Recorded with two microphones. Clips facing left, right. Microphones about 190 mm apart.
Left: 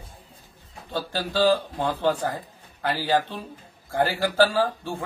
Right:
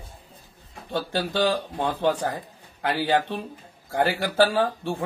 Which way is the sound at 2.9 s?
15° right (ahead or behind).